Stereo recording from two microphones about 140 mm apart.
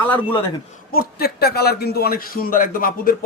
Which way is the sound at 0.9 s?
90° left.